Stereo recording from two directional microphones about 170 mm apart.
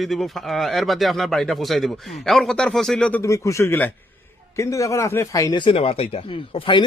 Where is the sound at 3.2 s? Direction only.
15° left (ahead or behind).